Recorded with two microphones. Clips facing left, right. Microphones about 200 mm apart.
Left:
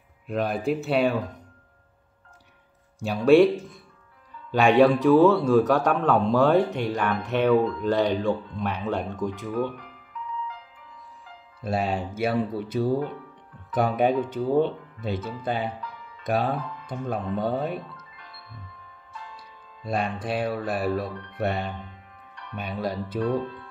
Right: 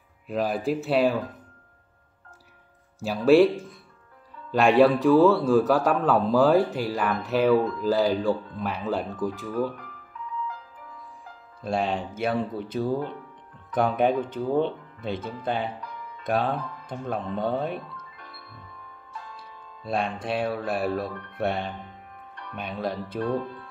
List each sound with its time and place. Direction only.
0.3 s a man's voice: centre (ahead or behind)
3.0 s a man's voice: centre (ahead or behind)
11.6 s a man's voice: 5° left (ahead or behind)
15.4 s a man's voice: 5° left (ahead or behind)
17.9 s music: 45° right (ahead or behind)
19.8 s a man's voice: centre (ahead or behind)